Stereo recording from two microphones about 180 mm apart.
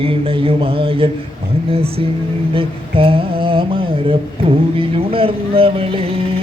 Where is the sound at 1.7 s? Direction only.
30° right (ahead or behind).